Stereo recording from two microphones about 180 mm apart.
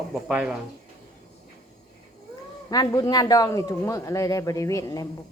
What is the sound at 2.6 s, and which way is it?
Speech, 20° left (ahead or behind).